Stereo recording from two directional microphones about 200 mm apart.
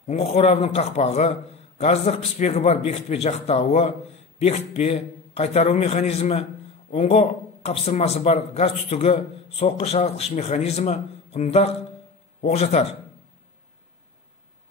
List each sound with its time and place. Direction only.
0.0 s a man's voice: 30° left (ahead or behind)